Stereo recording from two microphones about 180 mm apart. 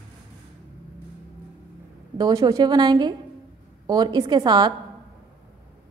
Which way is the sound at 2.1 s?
20° right (ahead or behind).